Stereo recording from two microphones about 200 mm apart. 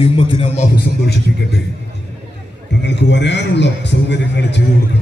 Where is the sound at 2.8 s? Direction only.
60° left (ahead or behind).